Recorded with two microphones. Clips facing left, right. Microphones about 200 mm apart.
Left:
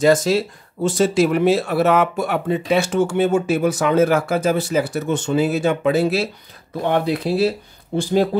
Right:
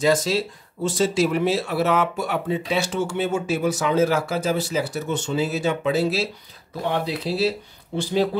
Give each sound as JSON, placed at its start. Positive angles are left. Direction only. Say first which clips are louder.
{"t": 0.0, "sound": "speech", "louder": "left 5 dB", "side_deg": 50}